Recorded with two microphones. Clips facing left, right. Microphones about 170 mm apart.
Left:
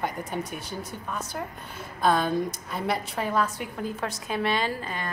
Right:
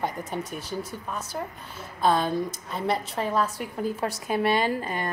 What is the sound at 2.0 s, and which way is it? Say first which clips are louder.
A woman's voice: even; centre (ahead or behind).